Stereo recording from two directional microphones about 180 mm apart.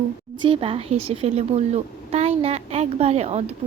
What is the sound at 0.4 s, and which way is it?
A woman's voice, 30° right (ahead or behind).